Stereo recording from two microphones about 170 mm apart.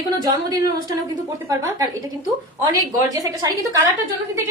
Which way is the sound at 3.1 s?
20° right (ahead or behind).